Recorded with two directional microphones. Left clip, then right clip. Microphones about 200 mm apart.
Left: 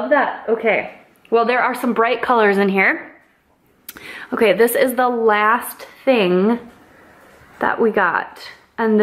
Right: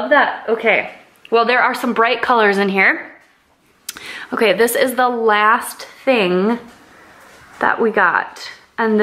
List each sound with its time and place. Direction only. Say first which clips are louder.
0.0 s a woman's voice: right 3 dB; 10° left (ahead or behind)